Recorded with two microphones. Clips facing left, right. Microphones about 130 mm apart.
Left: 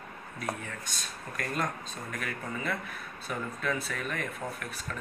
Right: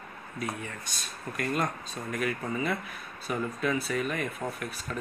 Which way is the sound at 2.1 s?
10° right (ahead or behind).